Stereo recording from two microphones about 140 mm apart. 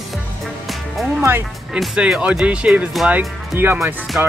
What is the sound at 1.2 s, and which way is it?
Speech, 15° right (ahead or behind).